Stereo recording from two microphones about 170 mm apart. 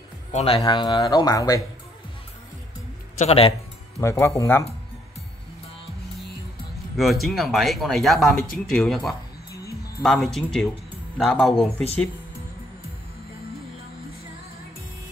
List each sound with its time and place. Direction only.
0.3 s speech: 40° left (ahead or behind)
0.7 s speech: 25° left (ahead or behind)
3.2 s speech: 35° left (ahead or behind)
4.0 s speech: 15° left (ahead or behind)
7.0 s speech: centre (ahead or behind)